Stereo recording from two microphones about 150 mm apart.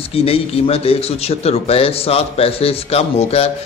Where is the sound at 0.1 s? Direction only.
40° left (ahead or behind).